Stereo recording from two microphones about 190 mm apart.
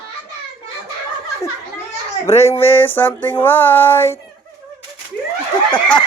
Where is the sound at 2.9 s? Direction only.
10° left (ahead or behind).